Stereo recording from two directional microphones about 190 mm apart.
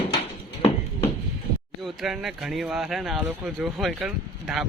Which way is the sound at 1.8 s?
Centre (ahead or behind).